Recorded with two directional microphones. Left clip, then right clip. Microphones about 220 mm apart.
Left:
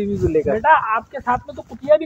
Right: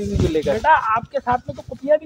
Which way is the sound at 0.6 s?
45° left (ahead or behind).